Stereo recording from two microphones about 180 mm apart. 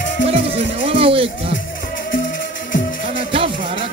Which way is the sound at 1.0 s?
30° right (ahead or behind).